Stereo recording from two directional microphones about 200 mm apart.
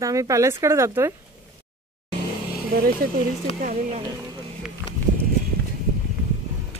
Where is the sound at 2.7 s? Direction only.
50° right (ahead or behind).